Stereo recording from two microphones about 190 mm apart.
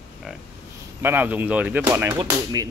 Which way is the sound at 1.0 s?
10° right (ahead or behind).